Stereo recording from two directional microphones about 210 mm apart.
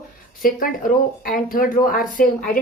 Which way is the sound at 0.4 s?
40° left (ahead or behind).